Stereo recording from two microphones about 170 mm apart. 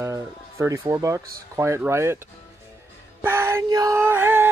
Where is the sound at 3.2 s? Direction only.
15° right (ahead or behind).